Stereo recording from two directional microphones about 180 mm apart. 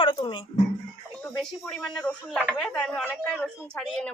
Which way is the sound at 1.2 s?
10° left (ahead or behind).